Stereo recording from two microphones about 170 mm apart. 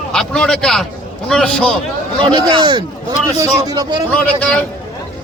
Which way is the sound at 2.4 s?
25° right (ahead or behind).